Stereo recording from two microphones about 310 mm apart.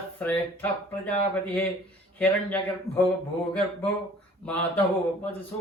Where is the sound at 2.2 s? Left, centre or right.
Centre.